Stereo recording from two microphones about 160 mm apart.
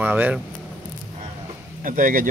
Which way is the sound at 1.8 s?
60° right (ahead or behind).